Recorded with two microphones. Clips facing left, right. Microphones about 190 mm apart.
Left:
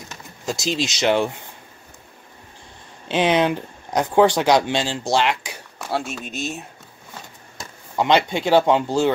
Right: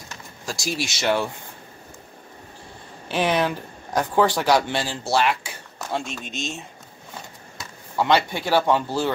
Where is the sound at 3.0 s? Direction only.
20° left (ahead or behind).